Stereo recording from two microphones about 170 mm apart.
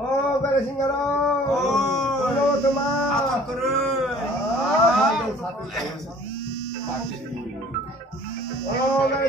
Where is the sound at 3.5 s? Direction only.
Centre (ahead or behind).